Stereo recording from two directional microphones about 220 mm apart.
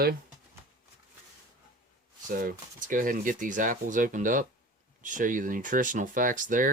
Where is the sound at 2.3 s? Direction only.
40° right (ahead or behind).